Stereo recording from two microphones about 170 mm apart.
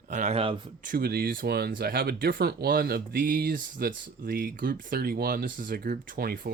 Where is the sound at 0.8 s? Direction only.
55° right (ahead or behind).